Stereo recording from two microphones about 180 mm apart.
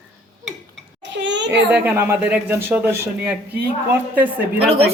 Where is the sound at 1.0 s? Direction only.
85° right.